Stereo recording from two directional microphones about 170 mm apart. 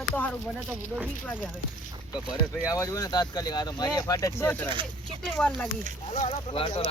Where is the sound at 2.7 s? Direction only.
20° left (ahead or behind).